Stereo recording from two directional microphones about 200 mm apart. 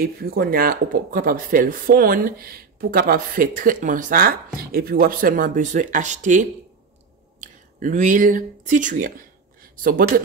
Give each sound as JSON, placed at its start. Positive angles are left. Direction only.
{"t": 0.0, "sound": "speech", "side_deg": -45}